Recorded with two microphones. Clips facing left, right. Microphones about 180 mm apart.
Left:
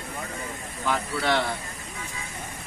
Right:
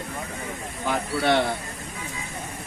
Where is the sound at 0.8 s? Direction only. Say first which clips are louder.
Right 3 dB; 50° right (ahead or behind).